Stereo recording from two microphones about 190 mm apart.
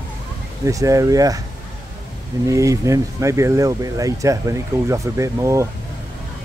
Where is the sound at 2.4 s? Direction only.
15° right (ahead or behind).